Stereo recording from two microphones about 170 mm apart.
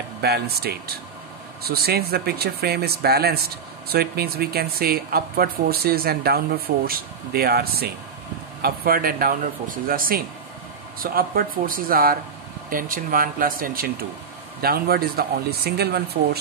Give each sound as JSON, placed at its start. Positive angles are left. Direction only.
{"t": 0.2, "sound": "speech", "side_deg": -70}